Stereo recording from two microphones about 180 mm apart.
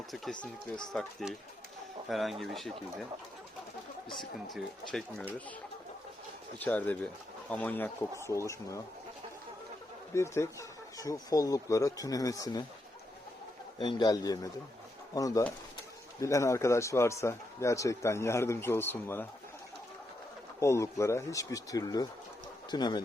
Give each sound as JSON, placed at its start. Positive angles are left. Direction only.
{"t": 0.9, "sound": "speech", "side_deg": 0}
{"t": 4.5, "sound": "speech", "side_deg": 0}
{"t": 6.6, "sound": "a man's voice", "side_deg": 10}
{"t": 10.2, "sound": "speech", "side_deg": 15}
{"t": 13.7, "sound": "a man's voice", "side_deg": 20}
{"t": 20.6, "sound": "a man's voice", "side_deg": 15}